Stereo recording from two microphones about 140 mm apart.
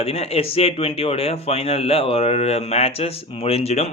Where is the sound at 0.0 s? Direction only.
45° left (ahead or behind).